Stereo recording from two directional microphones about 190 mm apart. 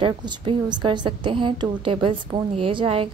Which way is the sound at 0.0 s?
25° right (ahead or behind).